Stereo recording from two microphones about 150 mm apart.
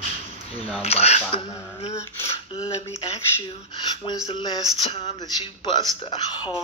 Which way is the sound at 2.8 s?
45° left (ahead or behind).